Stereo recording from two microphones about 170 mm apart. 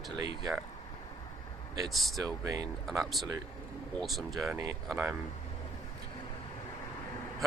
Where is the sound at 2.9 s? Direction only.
Centre (ahead or behind).